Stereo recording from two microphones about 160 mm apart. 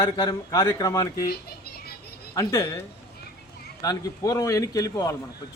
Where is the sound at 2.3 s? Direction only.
15° left (ahead or behind).